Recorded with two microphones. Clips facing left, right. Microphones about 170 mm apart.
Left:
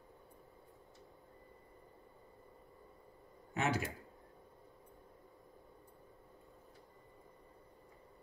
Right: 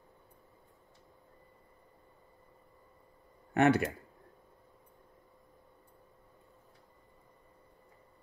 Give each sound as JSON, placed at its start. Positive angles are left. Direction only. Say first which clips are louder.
{"t": 3.5, "sound": "speech", "louder": "right 10 dB", "side_deg": -60}